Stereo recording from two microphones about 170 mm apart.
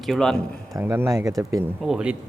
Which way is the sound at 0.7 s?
15° right (ahead or behind).